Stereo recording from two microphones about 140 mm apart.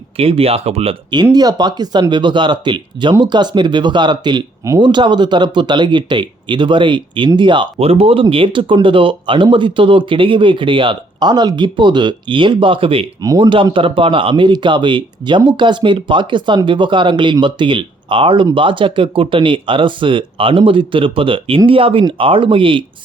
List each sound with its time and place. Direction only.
0.2 s speech: 45° right (ahead or behind)
1.1 s speech: 30° right (ahead or behind)
13.2 s speech: 25° right (ahead or behind)
13.5 s speech: 35° right (ahead or behind)